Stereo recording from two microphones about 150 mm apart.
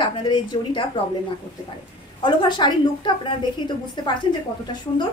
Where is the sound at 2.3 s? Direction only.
30° left (ahead or behind).